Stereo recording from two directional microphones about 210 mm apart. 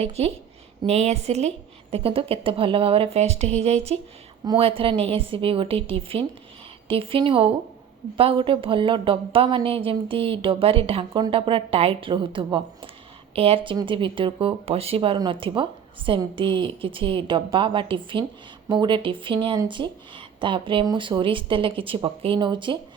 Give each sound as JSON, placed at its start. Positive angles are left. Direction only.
{"t": 0.0, "sound": "a woman's voice", "side_deg": -30}